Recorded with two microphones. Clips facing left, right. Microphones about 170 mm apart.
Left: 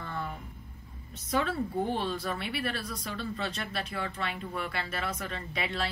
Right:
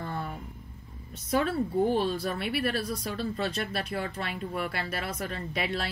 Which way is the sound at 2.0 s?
45° right (ahead or behind).